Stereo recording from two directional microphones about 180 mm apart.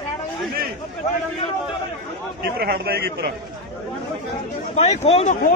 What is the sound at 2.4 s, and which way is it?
Speech, 60° right (ahead or behind).